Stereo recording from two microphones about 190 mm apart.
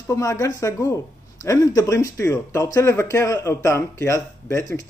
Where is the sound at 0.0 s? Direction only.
15° left (ahead or behind).